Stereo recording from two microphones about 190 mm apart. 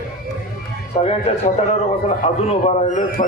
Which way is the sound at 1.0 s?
35° left (ahead or behind).